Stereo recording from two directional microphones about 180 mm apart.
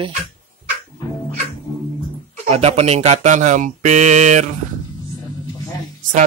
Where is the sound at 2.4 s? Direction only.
35° right (ahead or behind).